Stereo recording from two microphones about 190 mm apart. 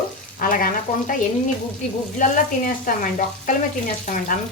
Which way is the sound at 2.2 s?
45° left (ahead or behind).